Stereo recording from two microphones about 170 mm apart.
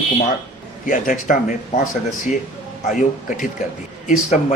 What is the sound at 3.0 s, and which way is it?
Speech, 50° left (ahead or behind).